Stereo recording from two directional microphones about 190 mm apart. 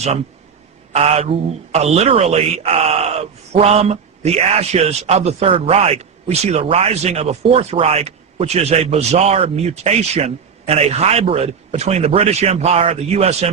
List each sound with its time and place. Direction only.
0.9 s speech: 35° right (ahead or behind)